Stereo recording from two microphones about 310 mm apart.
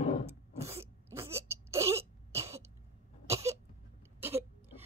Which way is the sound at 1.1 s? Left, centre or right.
Centre.